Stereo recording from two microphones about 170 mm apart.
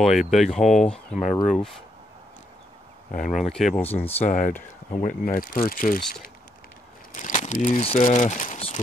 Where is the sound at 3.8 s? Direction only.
35° left (ahead or behind).